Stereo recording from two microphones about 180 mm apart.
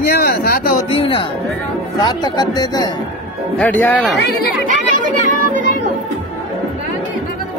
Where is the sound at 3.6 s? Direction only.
10° left (ahead or behind).